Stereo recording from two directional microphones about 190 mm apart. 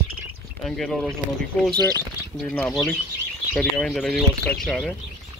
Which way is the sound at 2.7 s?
Centre (ahead or behind).